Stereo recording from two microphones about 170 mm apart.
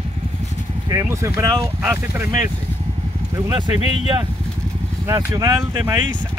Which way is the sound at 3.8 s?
35° left (ahead or behind).